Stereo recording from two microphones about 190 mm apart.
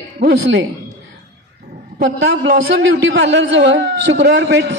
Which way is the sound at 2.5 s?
65° right (ahead or behind).